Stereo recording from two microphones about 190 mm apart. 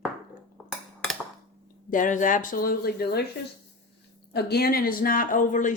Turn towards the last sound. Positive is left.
turn(degrees=40)  # may be behind; listen again after turning